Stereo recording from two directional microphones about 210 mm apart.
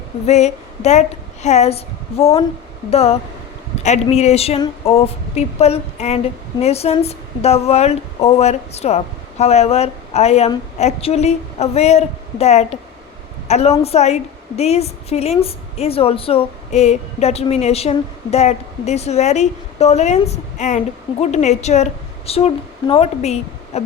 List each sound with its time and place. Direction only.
0.3 s a woman's voice: 30° left (ahead or behind)